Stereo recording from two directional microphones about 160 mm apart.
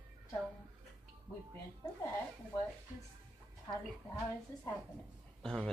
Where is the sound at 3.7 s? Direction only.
15° left (ahead or behind).